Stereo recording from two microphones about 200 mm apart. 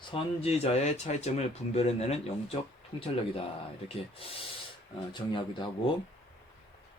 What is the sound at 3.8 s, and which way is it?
Speech, 30° left (ahead or behind).